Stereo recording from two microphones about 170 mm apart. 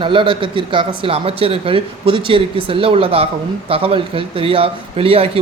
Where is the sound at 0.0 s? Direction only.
30° right (ahead or behind).